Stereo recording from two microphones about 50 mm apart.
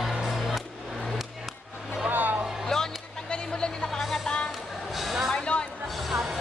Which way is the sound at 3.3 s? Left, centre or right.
Centre.